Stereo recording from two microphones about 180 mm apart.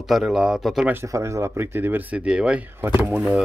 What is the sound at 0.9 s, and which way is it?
Speech, 15° right (ahead or behind).